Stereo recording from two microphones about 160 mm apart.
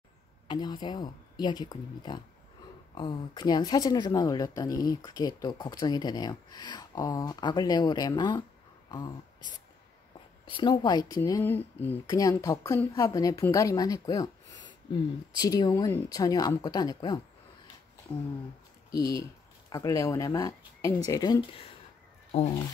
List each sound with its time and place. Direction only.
0.5 s a woman's voice: 25° left (ahead or behind)
8.8 s a sound: 25° left (ahead or behind)
10.4 s a woman's voice: 30° left (ahead or behind)
18.9 s a woman's voice: 20° left (ahead or behind)